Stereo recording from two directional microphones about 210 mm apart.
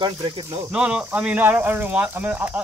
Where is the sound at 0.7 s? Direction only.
5° right (ahead or behind).